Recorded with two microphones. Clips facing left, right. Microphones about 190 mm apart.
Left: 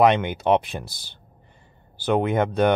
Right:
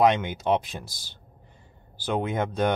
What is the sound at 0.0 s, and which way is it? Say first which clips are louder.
Speech: left 3 dB; 60° left (ahead or behind).